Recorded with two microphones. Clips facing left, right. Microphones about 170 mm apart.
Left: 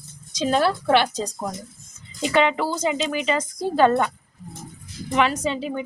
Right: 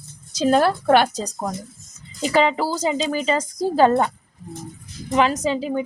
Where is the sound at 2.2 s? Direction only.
35° right (ahead or behind).